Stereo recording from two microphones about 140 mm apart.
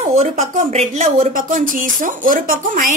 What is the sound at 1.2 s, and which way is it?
Speech, 75° right (ahead or behind).